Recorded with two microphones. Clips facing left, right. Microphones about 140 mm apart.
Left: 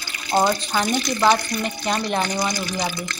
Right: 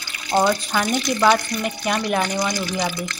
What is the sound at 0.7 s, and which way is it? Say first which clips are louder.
Speech: right 1 dB; centre (ahead or behind).